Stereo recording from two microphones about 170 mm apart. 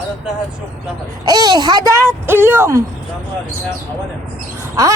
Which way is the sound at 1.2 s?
25° right (ahead or behind).